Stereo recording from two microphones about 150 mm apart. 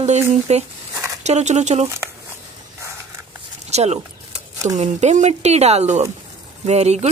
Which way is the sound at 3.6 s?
45° right (ahead or behind).